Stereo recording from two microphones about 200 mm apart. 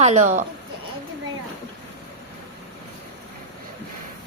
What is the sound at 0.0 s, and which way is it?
Speech, 35° right (ahead or behind).